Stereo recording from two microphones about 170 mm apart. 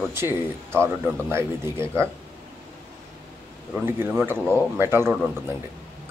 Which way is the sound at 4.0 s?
15° right (ahead or behind).